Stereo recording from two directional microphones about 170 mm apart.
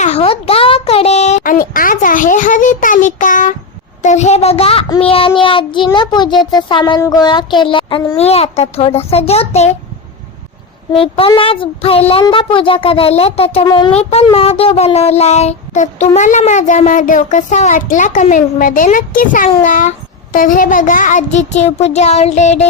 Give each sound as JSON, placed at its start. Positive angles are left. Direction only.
{"t": 0.0, "sound": "a sound", "side_deg": 35}
{"t": 4.0, "sound": "a child's voice", "side_deg": 40}
{"t": 10.9, "sound": "a child's voice", "side_deg": 35}
{"t": 13.7, "sound": "a child's voice", "side_deg": 25}
{"t": 13.9, "sound": "speech", "side_deg": 35}